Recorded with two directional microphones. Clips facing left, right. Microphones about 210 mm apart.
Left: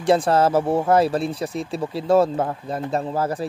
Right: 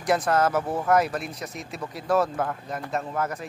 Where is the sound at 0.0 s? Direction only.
30° left (ahead or behind).